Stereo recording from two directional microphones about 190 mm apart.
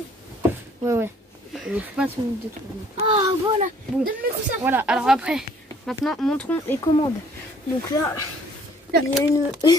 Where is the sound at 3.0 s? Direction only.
25° right (ahead or behind).